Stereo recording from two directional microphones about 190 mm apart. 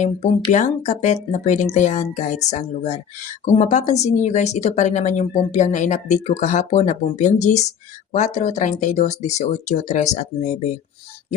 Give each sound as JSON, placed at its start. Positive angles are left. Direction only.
{"t": 0.0, "sound": "speech", "side_deg": 40}